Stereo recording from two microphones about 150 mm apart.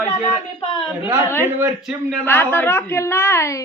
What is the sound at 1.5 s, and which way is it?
Speech, 15° right (ahead or behind).